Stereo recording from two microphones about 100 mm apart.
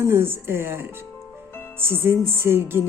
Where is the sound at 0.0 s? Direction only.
25° right (ahead or behind).